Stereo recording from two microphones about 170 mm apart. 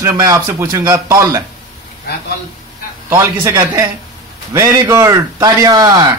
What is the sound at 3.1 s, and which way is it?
A man's voice, 15° right (ahead or behind).